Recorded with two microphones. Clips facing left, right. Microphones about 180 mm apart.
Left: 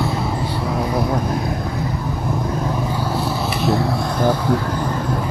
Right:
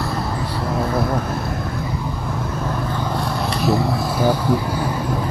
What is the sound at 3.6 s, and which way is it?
Vehicle, 5° right (ahead or behind).